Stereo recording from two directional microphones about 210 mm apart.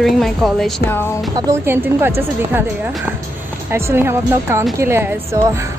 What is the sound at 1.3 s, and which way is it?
A woman's voice, 15° right (ahead or behind).